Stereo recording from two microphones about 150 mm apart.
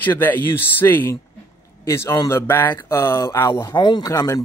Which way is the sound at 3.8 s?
30° left (ahead or behind).